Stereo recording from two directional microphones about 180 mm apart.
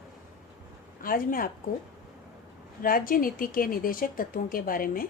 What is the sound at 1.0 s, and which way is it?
Speech, 50° left (ahead or behind).